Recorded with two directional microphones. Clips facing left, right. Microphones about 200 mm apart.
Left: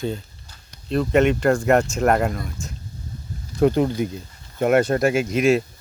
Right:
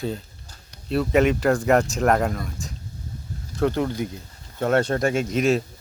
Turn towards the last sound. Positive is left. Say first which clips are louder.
# left 3 dB
turn(degrees=0)  # may be behind; listen again after turning